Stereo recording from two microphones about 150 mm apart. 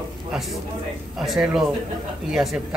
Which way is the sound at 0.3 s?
Centre (ahead or behind).